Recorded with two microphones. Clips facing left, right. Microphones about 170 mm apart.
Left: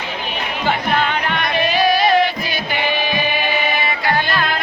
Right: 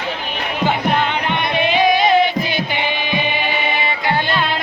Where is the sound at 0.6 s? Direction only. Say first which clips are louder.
Right 1 dB; 20° right (ahead or behind).